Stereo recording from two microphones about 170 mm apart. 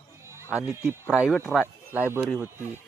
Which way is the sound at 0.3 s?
15° right (ahead or behind).